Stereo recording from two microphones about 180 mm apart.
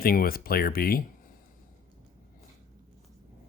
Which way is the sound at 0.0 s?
55° left (ahead or behind).